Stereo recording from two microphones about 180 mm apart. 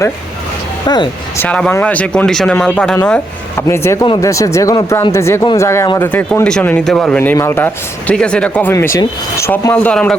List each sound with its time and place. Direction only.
0.9 s speech: 25° left (ahead or behind)
1.4 s speech: 5° left (ahead or behind)